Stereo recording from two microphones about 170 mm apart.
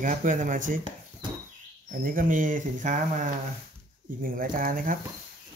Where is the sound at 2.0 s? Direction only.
55° right (ahead or behind).